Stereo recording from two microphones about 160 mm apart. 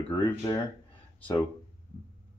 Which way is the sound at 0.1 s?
25° left (ahead or behind).